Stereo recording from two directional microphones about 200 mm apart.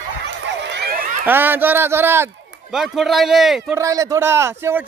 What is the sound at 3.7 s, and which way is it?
A man's voice, 15° right (ahead or behind).